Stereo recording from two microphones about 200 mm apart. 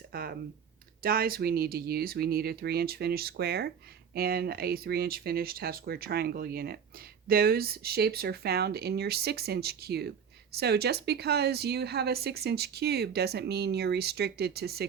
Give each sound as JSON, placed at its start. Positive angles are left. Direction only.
{"t": 0.1, "sound": "a woman's voice", "side_deg": -50}